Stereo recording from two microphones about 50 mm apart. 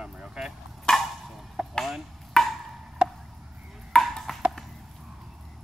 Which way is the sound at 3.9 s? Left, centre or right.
Centre.